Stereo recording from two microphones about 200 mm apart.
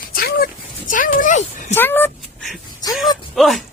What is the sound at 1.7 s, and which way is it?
Speech, 10° left (ahead or behind).